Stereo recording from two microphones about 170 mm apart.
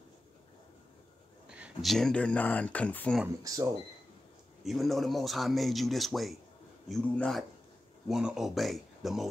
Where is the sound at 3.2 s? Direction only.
20° right (ahead or behind).